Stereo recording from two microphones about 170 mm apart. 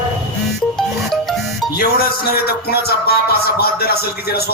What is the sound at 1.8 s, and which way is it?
Speech, 65° left (ahead or behind).